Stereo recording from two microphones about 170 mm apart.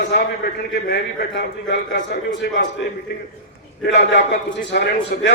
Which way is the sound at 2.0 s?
85° left.